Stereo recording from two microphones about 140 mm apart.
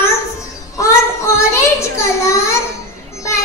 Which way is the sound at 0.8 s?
20° left (ahead or behind).